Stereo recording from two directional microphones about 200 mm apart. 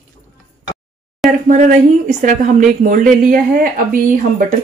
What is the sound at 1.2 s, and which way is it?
Speech, 40° right (ahead or behind).